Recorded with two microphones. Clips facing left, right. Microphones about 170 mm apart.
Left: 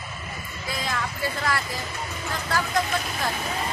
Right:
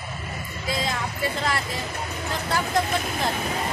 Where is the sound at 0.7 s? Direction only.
25° right (ahead or behind).